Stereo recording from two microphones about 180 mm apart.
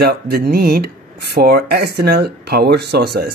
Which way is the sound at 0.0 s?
60° right (ahead or behind).